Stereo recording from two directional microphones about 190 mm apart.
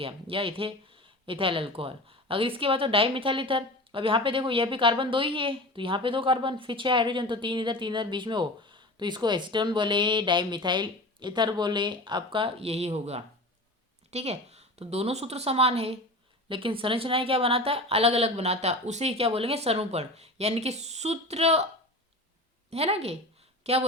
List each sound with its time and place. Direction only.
0.0 s a woman's voice: 30° right (ahead or behind)
22.7 s a woman's voice: 30° right (ahead or behind)